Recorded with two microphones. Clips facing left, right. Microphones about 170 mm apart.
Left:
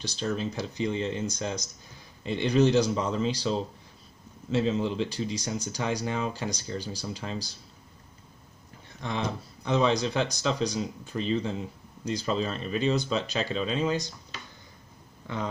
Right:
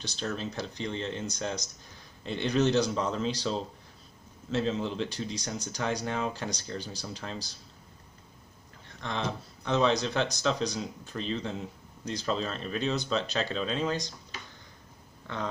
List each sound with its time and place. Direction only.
0.1 s speech: centre (ahead or behind)
9.0 s speech: 10° left (ahead or behind)